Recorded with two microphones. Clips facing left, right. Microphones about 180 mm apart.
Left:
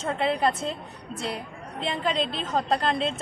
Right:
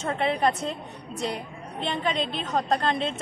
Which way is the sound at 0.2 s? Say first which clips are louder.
Even; centre (ahead or behind).